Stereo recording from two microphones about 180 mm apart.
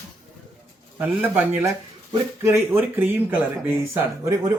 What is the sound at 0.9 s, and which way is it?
Speech, 10° right (ahead or behind).